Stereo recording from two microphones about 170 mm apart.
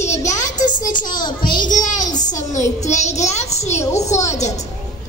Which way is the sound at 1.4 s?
55° left (ahead or behind).